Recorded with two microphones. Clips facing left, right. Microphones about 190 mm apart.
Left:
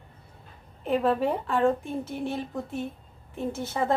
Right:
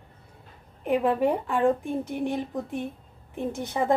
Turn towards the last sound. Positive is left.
turn(degrees=-15)  # may be behind; listen again after turning